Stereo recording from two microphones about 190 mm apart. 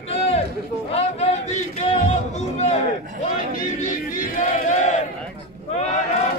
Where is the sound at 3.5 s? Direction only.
45° left (ahead or behind).